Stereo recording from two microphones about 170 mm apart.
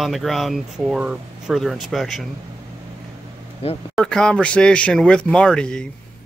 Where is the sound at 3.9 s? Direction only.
5° left (ahead or behind).